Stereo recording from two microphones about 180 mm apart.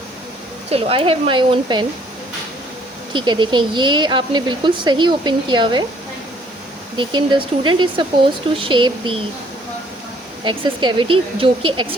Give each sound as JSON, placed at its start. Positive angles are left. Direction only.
{"t": 0.7, "sound": "speech", "side_deg": -30}
{"t": 3.1, "sound": "speech", "side_deg": -25}
{"t": 6.9, "sound": "speech", "side_deg": -25}
{"t": 10.4, "sound": "speech", "side_deg": -25}